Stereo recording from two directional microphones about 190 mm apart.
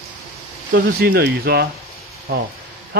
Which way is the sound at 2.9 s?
55° right (ahead or behind).